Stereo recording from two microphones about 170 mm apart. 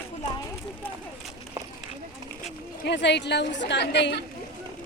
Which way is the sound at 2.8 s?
90° left.